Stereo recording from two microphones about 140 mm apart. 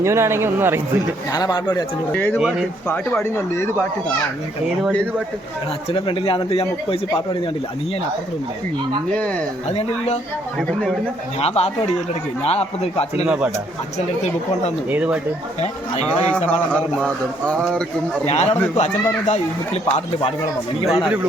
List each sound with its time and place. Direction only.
0.0 s speech: 20° right (ahead or behind)
1.3 s a man's voice: 30° left (ahead or behind)
2.1 s speech: 15° left (ahead or behind)
2.4 s speech: 5° right (ahead or behind)
2.8 s speech: 15° left (ahead or behind)
5.9 s a man's voice: 40° left (ahead or behind)
9.6 s speech: 50° left (ahead or behind)
11.3 s speech: 45° left (ahead or behind)
13.2 s speech: 5° right (ahead or behind)
14.8 s speech: 10° right (ahead or behind)
16.5 s speech: 10° left (ahead or behind)
18.3 s speech: 50° left (ahead or behind)